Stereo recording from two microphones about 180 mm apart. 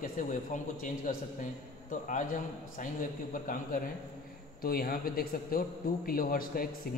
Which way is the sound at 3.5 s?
50° left (ahead or behind).